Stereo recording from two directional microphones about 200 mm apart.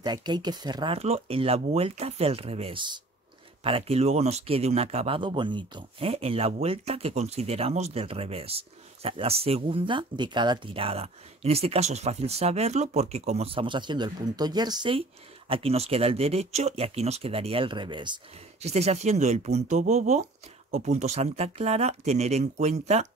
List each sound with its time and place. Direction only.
0.0 s speech: 20° right (ahead or behind)